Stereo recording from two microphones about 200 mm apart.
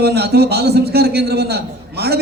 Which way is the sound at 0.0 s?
55° right (ahead or behind).